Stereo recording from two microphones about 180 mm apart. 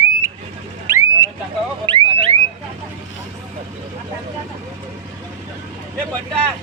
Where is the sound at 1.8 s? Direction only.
30° right (ahead or behind).